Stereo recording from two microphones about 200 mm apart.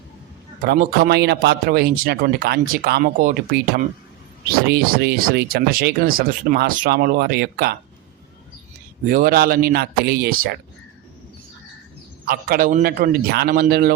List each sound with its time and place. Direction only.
0.6 s speech: 45° right (ahead or behind)
9.0 s speech: 45° right (ahead or behind)
12.2 s speech: 45° right (ahead or behind)